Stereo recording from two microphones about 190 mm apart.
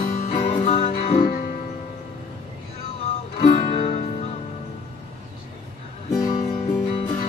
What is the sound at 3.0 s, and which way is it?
Music, 30° left (ahead or behind).